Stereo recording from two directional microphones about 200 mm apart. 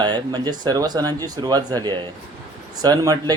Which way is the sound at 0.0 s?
20° right (ahead or behind).